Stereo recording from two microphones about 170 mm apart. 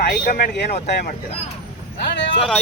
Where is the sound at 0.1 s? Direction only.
60° left (ahead or behind).